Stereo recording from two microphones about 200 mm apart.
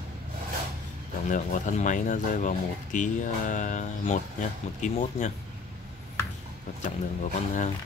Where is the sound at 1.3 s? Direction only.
40° left (ahead or behind).